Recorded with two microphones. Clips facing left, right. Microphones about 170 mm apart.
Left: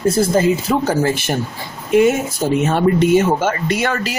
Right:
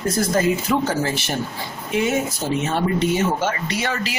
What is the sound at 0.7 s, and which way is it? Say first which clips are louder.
Speech: left 3 dB; 40° left (ahead or behind).